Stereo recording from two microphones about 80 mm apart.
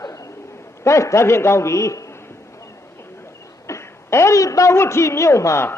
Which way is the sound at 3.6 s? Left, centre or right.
Left.